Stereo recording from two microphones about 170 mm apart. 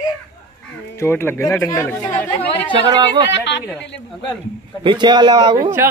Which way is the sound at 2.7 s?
25° right (ahead or behind).